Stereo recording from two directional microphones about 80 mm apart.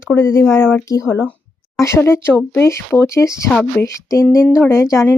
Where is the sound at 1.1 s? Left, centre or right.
Left.